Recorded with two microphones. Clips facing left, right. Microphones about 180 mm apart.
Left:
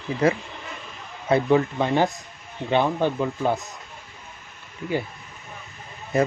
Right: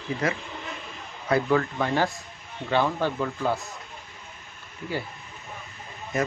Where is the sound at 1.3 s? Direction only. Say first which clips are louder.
Left 4 dB; 20° left (ahead or behind).